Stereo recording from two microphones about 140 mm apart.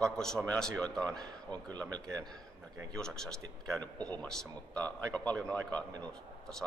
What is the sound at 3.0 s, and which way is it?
Speech, 5° left (ahead or behind).